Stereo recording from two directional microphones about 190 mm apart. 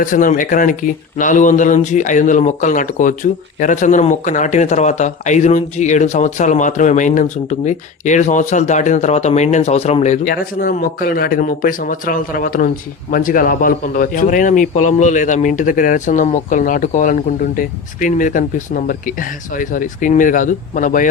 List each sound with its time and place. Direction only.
0.0 s speech: 45° left (ahead or behind)
10.2 s speech: 50° left (ahead or behind)